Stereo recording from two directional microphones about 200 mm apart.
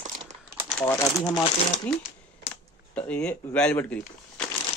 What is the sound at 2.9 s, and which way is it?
Speech, 5° left (ahead or behind).